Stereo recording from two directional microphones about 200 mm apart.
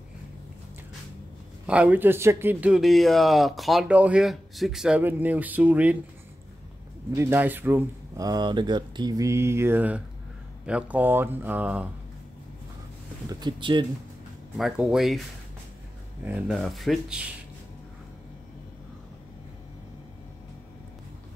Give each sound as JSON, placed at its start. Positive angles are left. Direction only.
{"t": 1.7, "sound": "a man's voice", "side_deg": -5}
{"t": 7.1, "sound": "a man's voice", "side_deg": -10}
{"t": 13.3, "sound": "speech", "side_deg": -20}
{"t": 14.6, "sound": "speech", "side_deg": 0}
{"t": 16.3, "sound": "speech", "side_deg": 0}